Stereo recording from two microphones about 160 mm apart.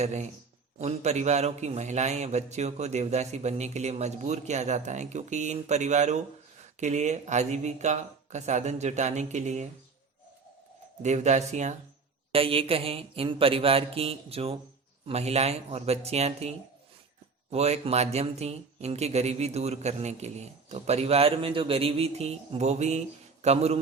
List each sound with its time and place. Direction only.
0.0 s speech: 45° right (ahead or behind)
11.0 s speech: 45° right (ahead or behind)
12.3 s speech: 35° right (ahead or behind)